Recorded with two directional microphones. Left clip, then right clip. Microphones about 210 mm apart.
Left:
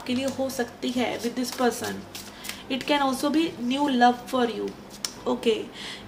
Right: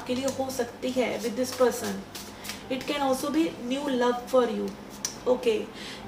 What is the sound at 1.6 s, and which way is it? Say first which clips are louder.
A woman's voice: right 1 dB; 45° left (ahead or behind).